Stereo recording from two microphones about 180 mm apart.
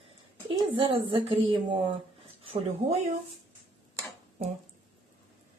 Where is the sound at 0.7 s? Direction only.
30° right (ahead or behind).